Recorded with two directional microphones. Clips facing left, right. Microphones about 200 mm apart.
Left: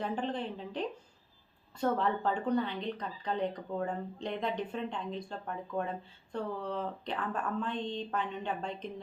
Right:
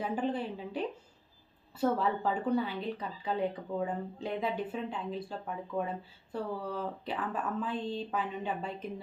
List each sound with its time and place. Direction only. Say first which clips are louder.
0.0 s speech: right 2 dB; 5° right (ahead or behind)